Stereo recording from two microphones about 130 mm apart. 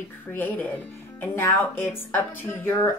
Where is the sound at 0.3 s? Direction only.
15° left (ahead or behind).